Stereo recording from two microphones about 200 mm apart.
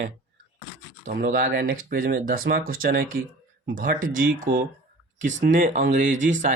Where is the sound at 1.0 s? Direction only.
40° right (ahead or behind).